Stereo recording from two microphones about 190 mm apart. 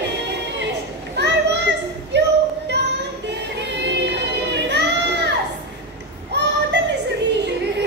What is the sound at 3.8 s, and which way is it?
Crowd, 65° right (ahead or behind).